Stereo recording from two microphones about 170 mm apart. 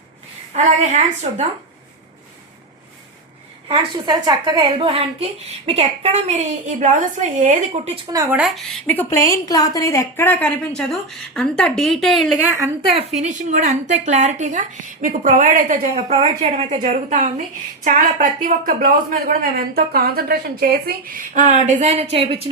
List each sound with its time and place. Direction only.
0.5 s a woman's voice: 40° right (ahead or behind)
3.7 s a woman's voice: 25° right (ahead or behind); by 7.9 s 45° right (ahead or behind)
7.9 s speech: 20° right (ahead or behind)
8.3 s a woman's voice: 5° right (ahead or behind)
12.5 s a woman's voice: 10° right (ahead or behind)
13.1 s a woman's voice: 45° right (ahead or behind)